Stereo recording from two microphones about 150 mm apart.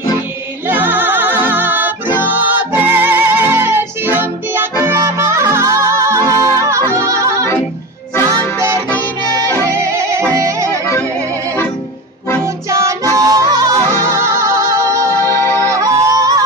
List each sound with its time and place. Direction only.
0.7 s music: 10° right (ahead or behind)
12.6 s music: 20° right (ahead or behind)
15.2 s music: 15° left (ahead or behind)
15.7 s yodeling: 20° right (ahead or behind)